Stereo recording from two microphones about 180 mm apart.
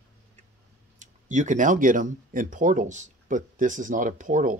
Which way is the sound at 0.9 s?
45° right (ahead or behind).